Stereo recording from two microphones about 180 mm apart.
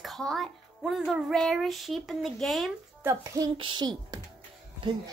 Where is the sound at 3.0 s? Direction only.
15° right (ahead or behind).